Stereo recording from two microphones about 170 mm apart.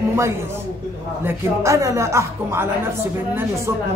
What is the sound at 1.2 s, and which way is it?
A man's voice, 15° right (ahead or behind).